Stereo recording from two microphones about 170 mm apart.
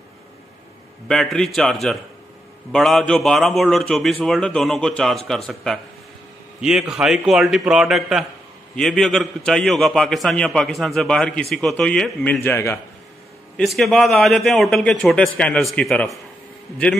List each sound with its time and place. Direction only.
1.0 s a man's voice: centre (ahead or behind)
13.6 s a man's voice: centre (ahead or behind)